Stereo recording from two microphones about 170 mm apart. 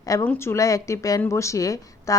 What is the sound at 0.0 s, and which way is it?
A woman's voice, 20° left (ahead or behind).